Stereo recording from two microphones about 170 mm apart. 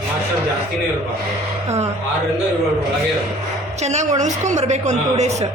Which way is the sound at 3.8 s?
40° right (ahead or behind).